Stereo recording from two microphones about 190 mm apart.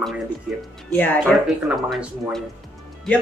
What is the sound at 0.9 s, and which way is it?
Speech, 10° left (ahead or behind).